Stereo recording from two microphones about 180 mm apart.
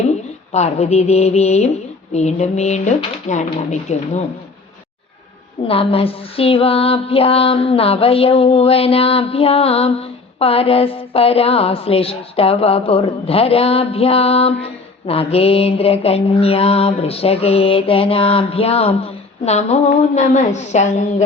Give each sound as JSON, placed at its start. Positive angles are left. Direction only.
{"t": 0.5, "sound": "female singing", "side_deg": 40}
{"t": 5.6, "sound": "female singing", "side_deg": 30}